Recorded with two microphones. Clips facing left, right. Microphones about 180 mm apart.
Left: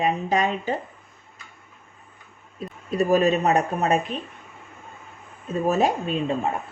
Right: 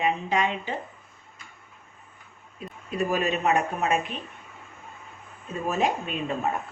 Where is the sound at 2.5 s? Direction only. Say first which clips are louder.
Left 5 dB; 35° left (ahead or behind).